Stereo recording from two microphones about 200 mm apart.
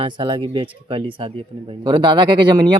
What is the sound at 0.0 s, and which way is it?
Speech, 25° right (ahead or behind).